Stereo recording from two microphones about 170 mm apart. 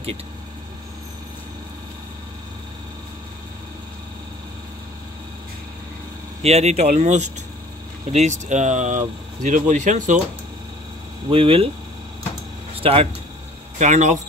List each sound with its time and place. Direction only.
6.4 s speech: 40° right (ahead or behind)
11.2 s speech: 35° right (ahead or behind)
12.8 s speech: 35° right (ahead or behind)